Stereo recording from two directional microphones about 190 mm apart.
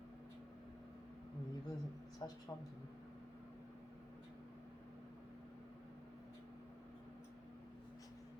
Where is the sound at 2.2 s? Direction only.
20° left (ahead or behind).